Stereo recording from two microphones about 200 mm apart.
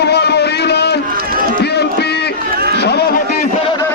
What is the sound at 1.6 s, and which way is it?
Music, 55° left (ahead or behind).